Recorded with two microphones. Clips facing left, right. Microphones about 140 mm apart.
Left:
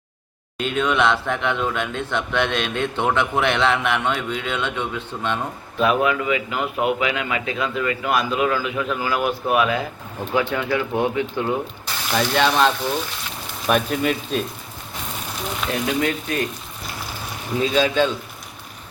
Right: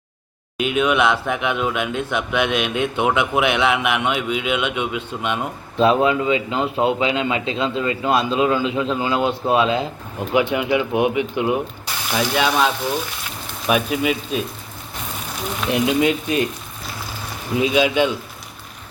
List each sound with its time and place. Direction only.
0.6 s a man's voice: 10° right (ahead or behind)
5.7 s a man's voice: 25° right (ahead or behind); by 14.4 s 5° right (ahead or behind)
15.7 s a man's voice: 15° right (ahead or behind)
17.6 s a man's voice: 10° right (ahead or behind)